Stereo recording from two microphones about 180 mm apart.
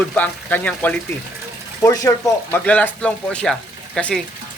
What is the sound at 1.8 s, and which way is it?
Speech, 20° left (ahead or behind).